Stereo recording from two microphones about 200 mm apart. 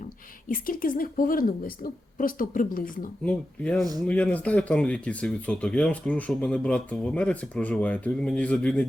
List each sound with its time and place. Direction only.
0.4 s a woman's voice: 45° left (ahead or behind)
3.2 s speech: 5° left (ahead or behind)